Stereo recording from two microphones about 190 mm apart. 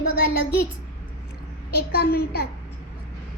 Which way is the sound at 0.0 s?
50° left (ahead or behind).